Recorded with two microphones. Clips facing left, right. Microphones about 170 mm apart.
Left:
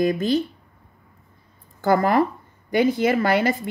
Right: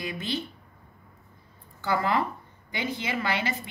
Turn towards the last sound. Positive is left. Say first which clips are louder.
# left 10 dB
turn(degrees=50)  # may be behind; listen again after turning